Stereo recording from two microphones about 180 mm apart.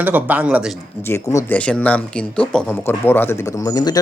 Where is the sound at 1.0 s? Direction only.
15° left (ahead or behind).